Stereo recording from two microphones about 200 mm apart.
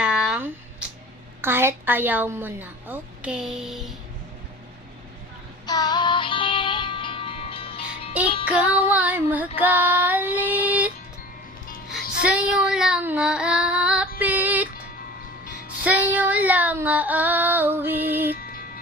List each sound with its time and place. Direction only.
0.0 s a sound: 5° right (ahead or behind)
1.4 s child singing: 10° right (ahead or behind)
5.6 s music: 20° left (ahead or behind)
8.4 s child singing: 5° right (ahead or behind)
11.9 s music: 5° right (ahead or behind)
14.2 s female singing: 10° right (ahead or behind)
15.8 s child singing: 10° right (ahead or behind)